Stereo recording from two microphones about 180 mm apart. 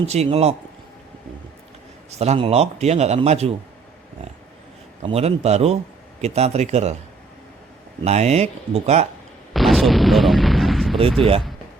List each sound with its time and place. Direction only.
0.0 s a man's voice: 35° right (ahead or behind)
2.0 s a man's voice: 35° right (ahead or behind)
5.0 s a man's voice: 35° right (ahead or behind)
8.0 s a man's voice: 35° right (ahead or behind)
9.5 s artillery fire: centre (ahead or behind)
11.2 s a man's voice: 30° right (ahead or behind)